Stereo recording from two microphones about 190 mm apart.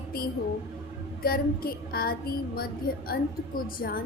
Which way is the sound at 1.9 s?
50° left (ahead or behind).